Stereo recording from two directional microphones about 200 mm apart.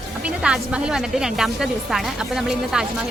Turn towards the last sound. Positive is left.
turn(degrees=-5)  # may be behind; listen again after turning